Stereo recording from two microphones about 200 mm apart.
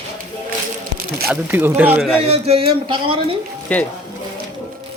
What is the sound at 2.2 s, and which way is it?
Speech, 30° right (ahead or behind).